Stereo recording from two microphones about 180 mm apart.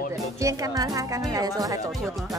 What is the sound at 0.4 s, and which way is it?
Speech, 20° right (ahead or behind).